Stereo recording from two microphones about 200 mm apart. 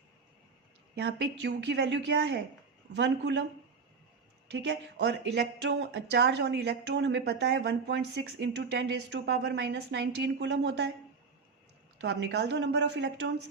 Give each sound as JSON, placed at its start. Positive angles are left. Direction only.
{"t": 0.9, "sound": "speech", "side_deg": -55}
{"t": 4.5, "sound": "speech", "side_deg": -60}
{"t": 11.9, "sound": "speech", "side_deg": -60}